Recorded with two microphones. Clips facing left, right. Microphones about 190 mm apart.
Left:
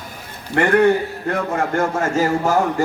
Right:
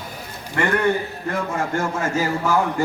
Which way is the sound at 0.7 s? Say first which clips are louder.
Left 8 dB; 60° left (ahead or behind).